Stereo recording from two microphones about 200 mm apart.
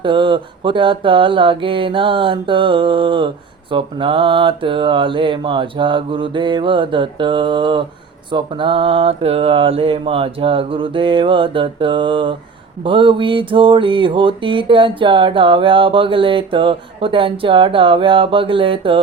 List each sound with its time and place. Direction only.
0.0 s mantra: 25° right (ahead or behind)